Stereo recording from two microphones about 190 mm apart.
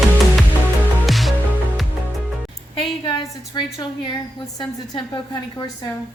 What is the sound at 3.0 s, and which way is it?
A woman's voice, 25° left (ahead or behind).